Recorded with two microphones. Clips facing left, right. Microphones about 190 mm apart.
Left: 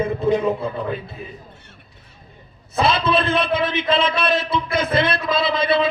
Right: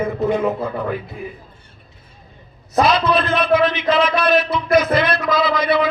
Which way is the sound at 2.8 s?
25° left (ahead or behind).